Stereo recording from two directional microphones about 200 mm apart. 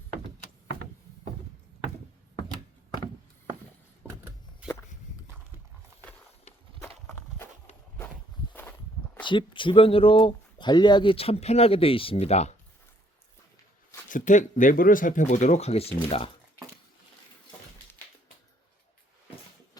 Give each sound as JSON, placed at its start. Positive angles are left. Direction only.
{"t": 6.8, "sound": "walk", "side_deg": 10}
{"t": 9.2, "sound": "speech", "side_deg": 25}
{"t": 14.1, "sound": "speech", "side_deg": 40}